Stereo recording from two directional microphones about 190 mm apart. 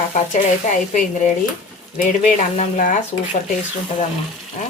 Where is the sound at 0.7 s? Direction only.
40° left (ahead or behind).